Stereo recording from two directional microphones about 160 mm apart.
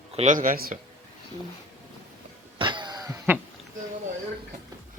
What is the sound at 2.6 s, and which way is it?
Cough, 30° right (ahead or behind).